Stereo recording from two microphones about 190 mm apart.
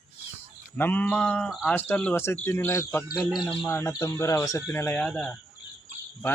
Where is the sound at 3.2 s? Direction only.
Centre (ahead or behind).